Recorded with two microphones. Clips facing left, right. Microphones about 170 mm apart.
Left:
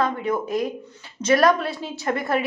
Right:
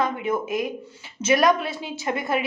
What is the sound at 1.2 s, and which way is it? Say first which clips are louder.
Speech: left 1 dB; 5° right (ahead or behind).